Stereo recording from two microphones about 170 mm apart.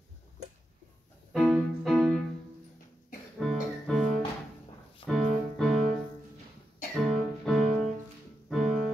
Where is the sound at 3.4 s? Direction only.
Centre (ahead or behind).